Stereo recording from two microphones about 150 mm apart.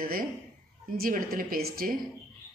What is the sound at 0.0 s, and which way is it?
A woman's voice, 70° right (ahead or behind).